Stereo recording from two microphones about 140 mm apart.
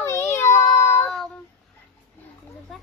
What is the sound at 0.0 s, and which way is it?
Child singing, 20° left (ahead or behind).